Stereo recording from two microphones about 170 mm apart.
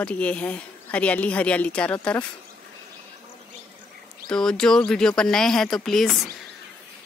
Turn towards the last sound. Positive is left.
turn(degrees=0)  # may be behind; listen again after turning